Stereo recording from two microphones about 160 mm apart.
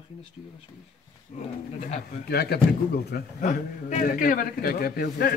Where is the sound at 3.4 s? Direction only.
50° left (ahead or behind).